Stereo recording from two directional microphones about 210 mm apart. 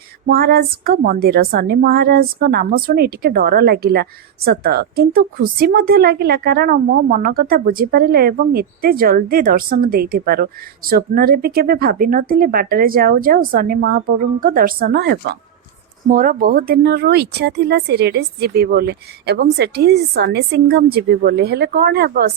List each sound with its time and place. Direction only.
0.3 s a woman's voice: 50° right (ahead or behind)
16.0 s a woman's voice: 40° right (ahead or behind)